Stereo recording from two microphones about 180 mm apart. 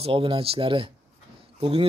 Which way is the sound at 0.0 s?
30° right (ahead or behind).